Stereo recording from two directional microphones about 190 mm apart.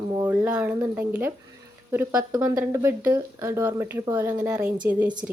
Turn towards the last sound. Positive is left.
turn(degrees=-5)  # may be behind; listen again after turning